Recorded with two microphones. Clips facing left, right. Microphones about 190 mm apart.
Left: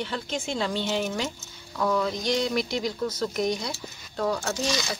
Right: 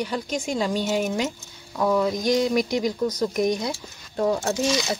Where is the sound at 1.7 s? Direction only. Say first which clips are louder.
Right 4 dB; 20° right (ahead or behind).